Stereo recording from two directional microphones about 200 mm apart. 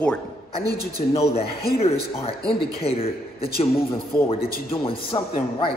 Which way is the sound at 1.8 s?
30° left (ahead or behind).